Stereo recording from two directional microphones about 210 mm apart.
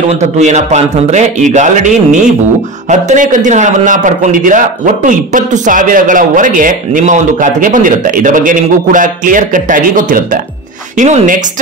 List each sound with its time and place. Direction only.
0.1 s a man's voice: 35° right (ahead or behind)